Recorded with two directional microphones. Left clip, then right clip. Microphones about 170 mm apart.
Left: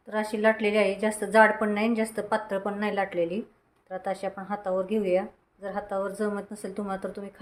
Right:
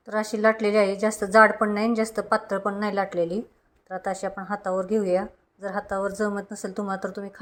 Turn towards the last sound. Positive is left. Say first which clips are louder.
# right 3 dB
turn(degrees=-20)  # may be behind; listen again after turning